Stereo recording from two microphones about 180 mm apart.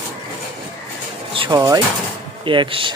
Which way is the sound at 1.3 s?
25° right (ahead or behind).